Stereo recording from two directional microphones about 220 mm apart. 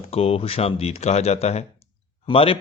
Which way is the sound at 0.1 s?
25° left (ahead or behind).